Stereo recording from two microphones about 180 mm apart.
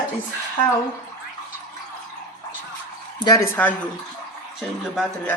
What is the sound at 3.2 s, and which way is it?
Speech, 20° left (ahead or behind).